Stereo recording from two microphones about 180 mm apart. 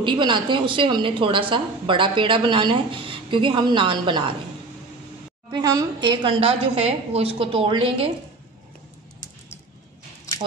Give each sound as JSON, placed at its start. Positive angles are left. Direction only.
{"t": 0.0, "sound": "a woman's voice", "side_deg": -25}
{"t": 5.5, "sound": "a woman's voice", "side_deg": -20}